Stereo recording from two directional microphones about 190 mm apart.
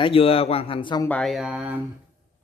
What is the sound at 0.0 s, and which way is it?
Speech, 30° left (ahead or behind).